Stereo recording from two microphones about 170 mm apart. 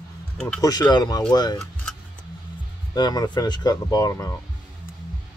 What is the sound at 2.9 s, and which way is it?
Speech, 25° left (ahead or behind).